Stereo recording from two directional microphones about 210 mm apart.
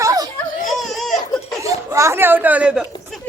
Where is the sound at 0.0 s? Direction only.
15° right (ahead or behind).